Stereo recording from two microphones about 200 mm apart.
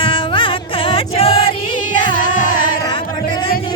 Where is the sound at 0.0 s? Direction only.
25° left (ahead or behind).